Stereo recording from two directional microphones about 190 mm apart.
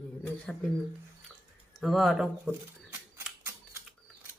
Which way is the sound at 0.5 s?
5° left (ahead or behind).